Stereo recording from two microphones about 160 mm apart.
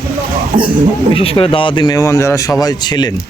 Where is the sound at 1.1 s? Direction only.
35° left (ahead or behind).